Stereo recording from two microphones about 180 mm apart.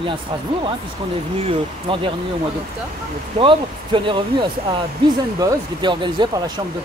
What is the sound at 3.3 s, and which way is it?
Speech, 30° right (ahead or behind).